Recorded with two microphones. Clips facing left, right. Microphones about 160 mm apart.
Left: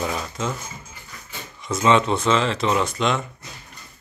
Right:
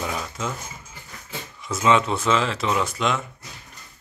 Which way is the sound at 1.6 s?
5° right (ahead or behind).